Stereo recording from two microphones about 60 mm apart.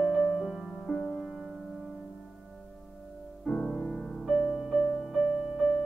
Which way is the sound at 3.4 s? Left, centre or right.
Centre.